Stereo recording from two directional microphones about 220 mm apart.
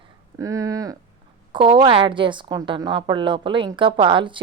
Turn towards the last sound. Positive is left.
turn(degrees=-20)  # may be behind; listen again after turning